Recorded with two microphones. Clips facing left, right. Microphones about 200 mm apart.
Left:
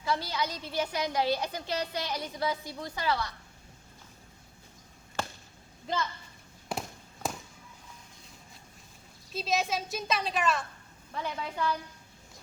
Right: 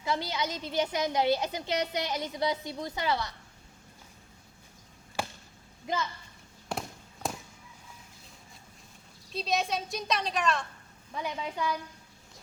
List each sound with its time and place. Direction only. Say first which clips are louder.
0.0 s a woman's voice: even; 20° right (ahead or behind)
5.2 s a sound: right 1 dB; 10° right (ahead or behind)
6.7 s fireworks: even; centre (ahead or behind)
9.3 s a woman's voice: even; 5° left (ahead or behind)
11.1 s a woman's voice: right 1 dB; 10° right (ahead or behind)